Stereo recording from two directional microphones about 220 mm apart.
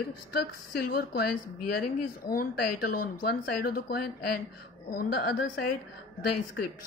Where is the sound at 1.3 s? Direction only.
90° left.